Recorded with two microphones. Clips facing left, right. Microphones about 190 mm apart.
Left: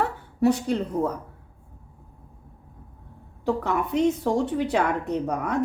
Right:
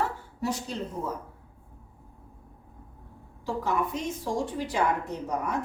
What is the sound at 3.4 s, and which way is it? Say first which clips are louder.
A woman's voice: left 4 dB; 65° left (ahead or behind).